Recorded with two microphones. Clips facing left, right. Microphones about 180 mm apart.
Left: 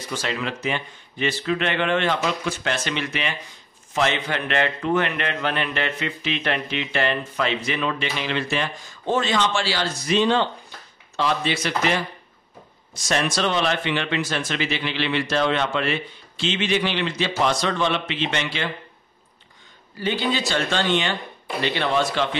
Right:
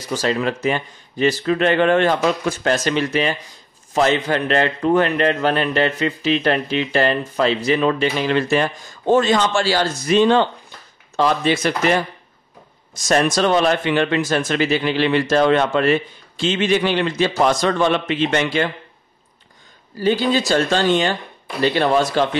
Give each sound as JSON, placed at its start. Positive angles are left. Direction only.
{"t": 0.1, "sound": "a man's voice", "side_deg": -40}
{"t": 20.0, "sound": "a man's voice", "side_deg": -40}